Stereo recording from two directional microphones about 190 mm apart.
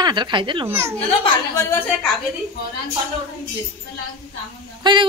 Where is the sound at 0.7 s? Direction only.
10° right (ahead or behind).